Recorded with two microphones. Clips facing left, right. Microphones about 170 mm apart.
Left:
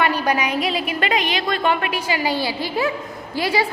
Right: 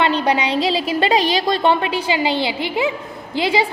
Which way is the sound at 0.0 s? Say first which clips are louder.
Right 2 dB; 25° right (ahead or behind).